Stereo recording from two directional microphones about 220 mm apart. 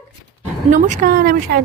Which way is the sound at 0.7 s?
35° right (ahead or behind).